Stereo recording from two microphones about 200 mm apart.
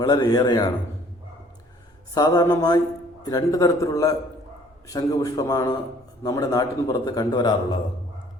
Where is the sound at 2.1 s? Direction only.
20° left (ahead or behind).